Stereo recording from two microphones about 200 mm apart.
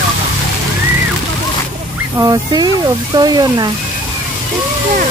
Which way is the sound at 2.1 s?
20° right (ahead or behind).